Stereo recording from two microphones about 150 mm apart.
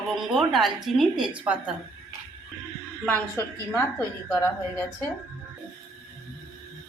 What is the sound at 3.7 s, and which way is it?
Speech, 15° left (ahead or behind).